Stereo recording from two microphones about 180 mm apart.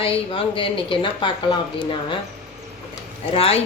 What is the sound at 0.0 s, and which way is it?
A woman's voice, 30° left (ahead or behind).